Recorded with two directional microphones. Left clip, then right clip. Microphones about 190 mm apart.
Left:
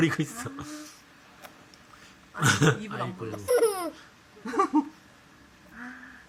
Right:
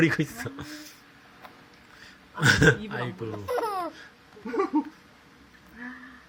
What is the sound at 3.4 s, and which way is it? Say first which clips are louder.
Babbling: left 5 dB; 30° left (ahead or behind).